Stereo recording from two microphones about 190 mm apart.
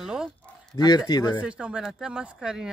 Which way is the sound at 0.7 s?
20° left (ahead or behind).